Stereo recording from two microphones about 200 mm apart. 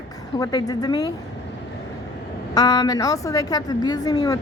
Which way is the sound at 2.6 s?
20° left (ahead or behind).